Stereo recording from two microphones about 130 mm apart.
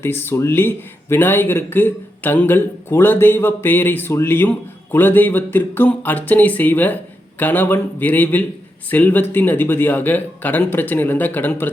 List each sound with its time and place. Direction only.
0.0 s a man's voice: 15° left (ahead or behind)